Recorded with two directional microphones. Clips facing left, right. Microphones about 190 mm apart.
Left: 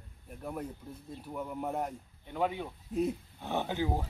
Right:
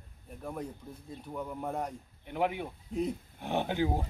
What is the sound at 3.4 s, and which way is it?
Speech, 15° right (ahead or behind).